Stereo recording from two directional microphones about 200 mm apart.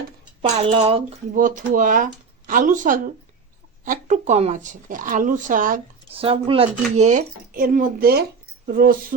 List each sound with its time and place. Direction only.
0.5 s speech: 30° right (ahead or behind)
1.3 s speech: 40° right (ahead or behind)
6.1 s speech: 30° right (ahead or behind); by 9.1 s 45° right (ahead or behind)